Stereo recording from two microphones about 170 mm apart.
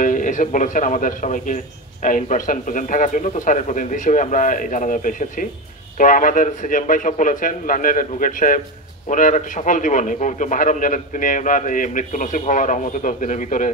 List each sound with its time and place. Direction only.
0.0 s a man's voice: 50° left (ahead or behind)